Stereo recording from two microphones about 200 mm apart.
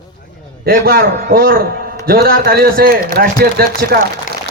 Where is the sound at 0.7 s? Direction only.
50° right (ahead or behind).